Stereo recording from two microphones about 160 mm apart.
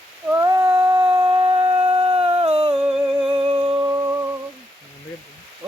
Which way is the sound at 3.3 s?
30° right (ahead or behind).